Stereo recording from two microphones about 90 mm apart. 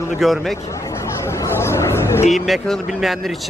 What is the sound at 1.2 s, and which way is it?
Chatter, 30° left (ahead or behind).